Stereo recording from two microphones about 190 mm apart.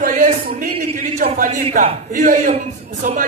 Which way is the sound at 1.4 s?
40° right (ahead or behind).